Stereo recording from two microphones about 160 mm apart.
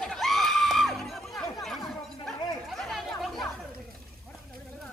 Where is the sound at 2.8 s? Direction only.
Centre (ahead or behind).